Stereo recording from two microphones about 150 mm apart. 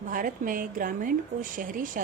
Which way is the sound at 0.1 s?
65° right (ahead or behind).